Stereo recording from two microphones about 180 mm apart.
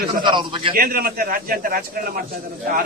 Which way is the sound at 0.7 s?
55° right (ahead or behind).